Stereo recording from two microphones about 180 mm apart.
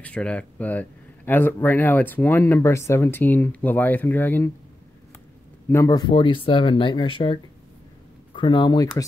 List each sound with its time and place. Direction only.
0.0 s speech: 5° left (ahead or behind)
5.7 s speech: 20° left (ahead or behind)
8.4 s speech: 25° left (ahead or behind)